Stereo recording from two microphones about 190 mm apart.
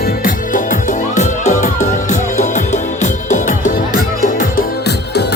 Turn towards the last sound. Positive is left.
turn(degrees=50)  # may be behind; listen again after turning